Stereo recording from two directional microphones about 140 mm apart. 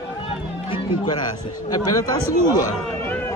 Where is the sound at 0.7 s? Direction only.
30° left (ahead or behind).